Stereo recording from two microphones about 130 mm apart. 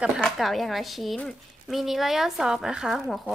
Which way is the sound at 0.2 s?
Centre (ahead or behind).